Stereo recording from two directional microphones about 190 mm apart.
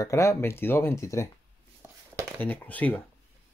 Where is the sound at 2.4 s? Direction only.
10° left (ahead or behind).